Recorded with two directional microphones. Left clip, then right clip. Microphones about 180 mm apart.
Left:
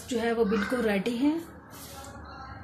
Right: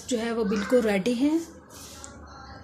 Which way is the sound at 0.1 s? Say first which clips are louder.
Left 1 dB; 55° right (ahead or behind).